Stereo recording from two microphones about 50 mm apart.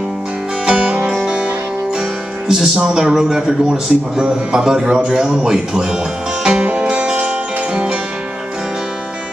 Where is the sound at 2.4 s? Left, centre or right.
Centre.